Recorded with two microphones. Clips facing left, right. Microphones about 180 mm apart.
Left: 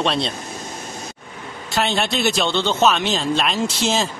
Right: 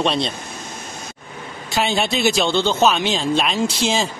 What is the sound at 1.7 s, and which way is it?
A man's voice, centre (ahead or behind).